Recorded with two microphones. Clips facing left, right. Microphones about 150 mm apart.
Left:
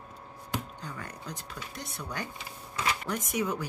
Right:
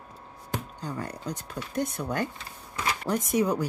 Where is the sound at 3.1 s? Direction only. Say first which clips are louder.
Right 6 dB; 35° right (ahead or behind).